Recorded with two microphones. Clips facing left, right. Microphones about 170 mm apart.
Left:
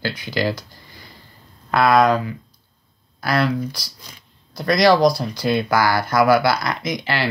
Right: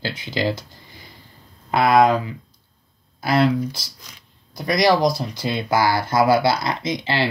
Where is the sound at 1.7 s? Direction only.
20° right (ahead or behind).